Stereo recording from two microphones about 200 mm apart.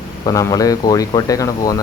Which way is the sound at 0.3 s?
15° left (ahead or behind).